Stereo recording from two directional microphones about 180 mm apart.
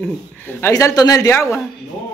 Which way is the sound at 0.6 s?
15° left (ahead or behind).